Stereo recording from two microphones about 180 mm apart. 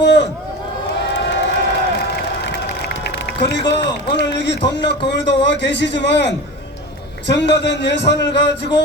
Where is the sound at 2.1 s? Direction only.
70° left (ahead or behind).